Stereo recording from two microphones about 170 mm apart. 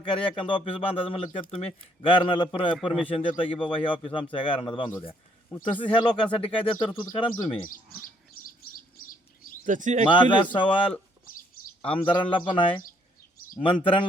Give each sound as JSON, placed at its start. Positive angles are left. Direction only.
{"t": 0.0, "sound": "speech", "side_deg": 30}
{"t": 2.7, "sound": "a man's voice", "side_deg": -5}
{"t": 3.1, "sound": "speech", "side_deg": 30}
{"t": 7.7, "sound": "speech", "side_deg": 55}
{"t": 9.6, "sound": "speech", "side_deg": -50}
{"t": 10.1, "sound": "speech", "side_deg": 30}
{"t": 11.8, "sound": "speech", "side_deg": 35}